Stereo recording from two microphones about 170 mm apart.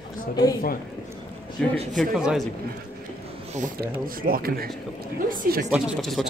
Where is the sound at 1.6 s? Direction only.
5° left (ahead or behind).